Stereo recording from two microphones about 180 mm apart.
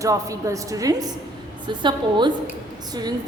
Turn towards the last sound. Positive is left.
turn(degrees=-20)  # may be behind; listen again after turning